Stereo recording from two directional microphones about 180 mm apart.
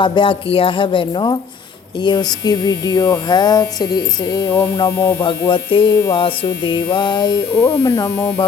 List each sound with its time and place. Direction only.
0.0 s mains hum: 25° left (ahead or behind)
4.4 s hum: 10° left (ahead or behind)
5.2 s mains hum: 30° left (ahead or behind)